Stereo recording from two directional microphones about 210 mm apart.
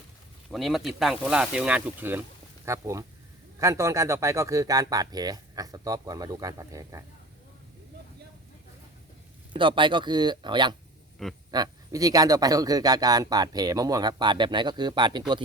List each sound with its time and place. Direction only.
0.5 s speech: centre (ahead or behind)
9.5 s speech: 25° right (ahead or behind)
11.2 s speech: centre (ahead or behind)
11.5 s speech: 20° right (ahead or behind)